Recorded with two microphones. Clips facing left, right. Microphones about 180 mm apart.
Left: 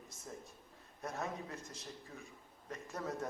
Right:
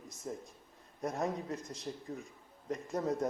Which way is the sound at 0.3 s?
35° right (ahead or behind).